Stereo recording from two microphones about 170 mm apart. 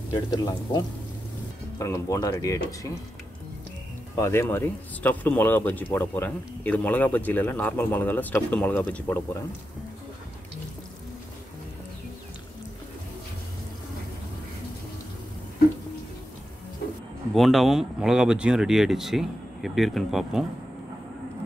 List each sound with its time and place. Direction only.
0.1 s speech: 20° left (ahead or behind)
4.1 s speech: 15° left (ahead or behind)
17.3 s speech: centre (ahead or behind)